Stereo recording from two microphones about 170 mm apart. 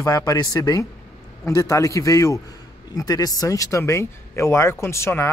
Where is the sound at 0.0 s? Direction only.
25° left (ahead or behind).